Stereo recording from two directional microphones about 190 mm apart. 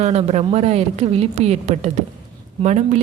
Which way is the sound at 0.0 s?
35° right (ahead or behind).